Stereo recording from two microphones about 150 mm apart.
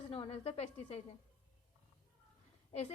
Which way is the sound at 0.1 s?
40° left (ahead or behind).